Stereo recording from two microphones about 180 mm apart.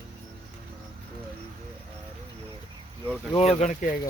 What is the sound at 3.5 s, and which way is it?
Speech, 40° left (ahead or behind).